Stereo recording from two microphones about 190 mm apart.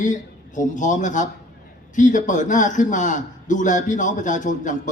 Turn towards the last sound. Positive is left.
turn(degrees=40)  # may be behind; listen again after turning